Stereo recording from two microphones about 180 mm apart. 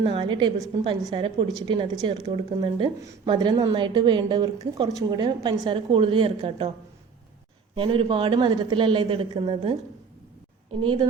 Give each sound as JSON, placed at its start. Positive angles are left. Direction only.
{"t": 0.0, "sound": "a woman's voice", "side_deg": -30}
{"t": 7.8, "sound": "a woman's voice", "side_deg": -30}